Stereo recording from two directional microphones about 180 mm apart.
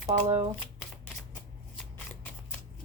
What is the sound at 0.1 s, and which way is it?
Speech, 35° right (ahead or behind).